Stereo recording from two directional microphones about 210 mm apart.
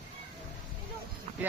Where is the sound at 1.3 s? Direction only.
35° right (ahead or behind).